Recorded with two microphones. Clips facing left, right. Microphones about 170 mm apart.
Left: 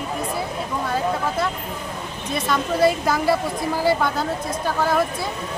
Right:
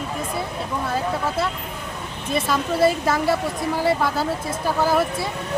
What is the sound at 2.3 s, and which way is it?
A woman's voice, 5° right (ahead or behind).